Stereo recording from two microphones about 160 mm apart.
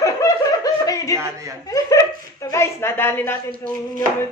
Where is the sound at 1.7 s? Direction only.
20° left (ahead or behind).